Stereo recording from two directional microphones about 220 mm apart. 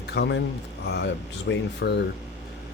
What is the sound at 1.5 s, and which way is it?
Speech, 50° left (ahead or behind).